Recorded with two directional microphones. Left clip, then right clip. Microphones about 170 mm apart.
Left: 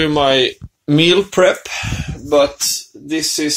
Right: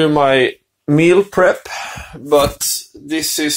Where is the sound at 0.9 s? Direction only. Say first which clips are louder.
Right 1 dB; centre (ahead or behind).